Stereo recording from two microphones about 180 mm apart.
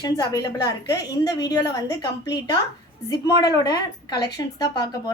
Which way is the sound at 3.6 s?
25° left (ahead or behind).